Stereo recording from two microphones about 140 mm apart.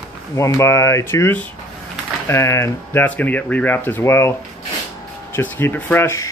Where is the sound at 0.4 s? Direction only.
20° left (ahead or behind).